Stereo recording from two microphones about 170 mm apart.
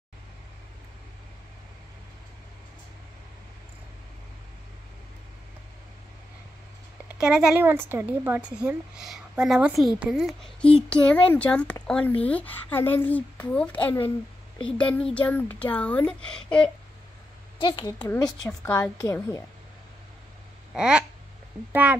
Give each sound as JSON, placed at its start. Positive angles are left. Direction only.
{"t": 7.2, "sound": "speech", "side_deg": -5}
{"t": 17.6, "sound": "a woman's voice", "side_deg": 25}
{"t": 17.9, "sound": "speech", "side_deg": 10}
{"t": 20.7, "sound": "speech", "side_deg": -5}